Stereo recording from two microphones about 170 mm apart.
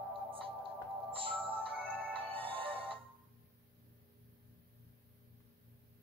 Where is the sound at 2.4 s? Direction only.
30° right (ahead or behind).